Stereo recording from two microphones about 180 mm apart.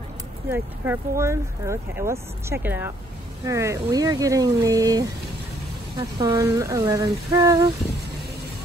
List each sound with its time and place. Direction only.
0.5 s speech: 15° right (ahead or behind)